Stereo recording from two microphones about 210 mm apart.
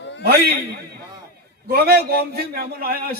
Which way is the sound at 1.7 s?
45° right (ahead or behind).